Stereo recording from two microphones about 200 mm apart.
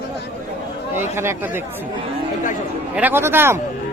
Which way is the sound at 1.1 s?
10° right (ahead or behind).